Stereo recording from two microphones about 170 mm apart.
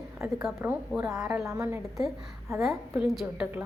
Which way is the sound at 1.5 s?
15° right (ahead or behind).